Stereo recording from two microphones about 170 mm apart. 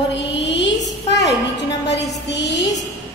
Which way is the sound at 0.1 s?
90° left.